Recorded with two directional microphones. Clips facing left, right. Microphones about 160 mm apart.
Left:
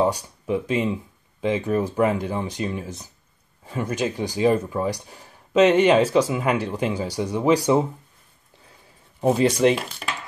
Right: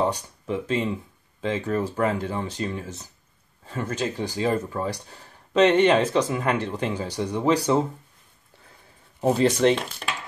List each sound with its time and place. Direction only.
0.0 s speech: 10° left (ahead or behind)
9.2 s speech: 10° left (ahead or behind)